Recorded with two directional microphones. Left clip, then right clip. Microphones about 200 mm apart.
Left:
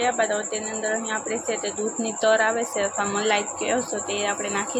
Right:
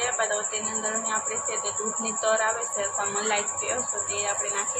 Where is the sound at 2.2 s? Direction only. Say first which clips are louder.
Left 5 dB; 35° left (ahead or behind).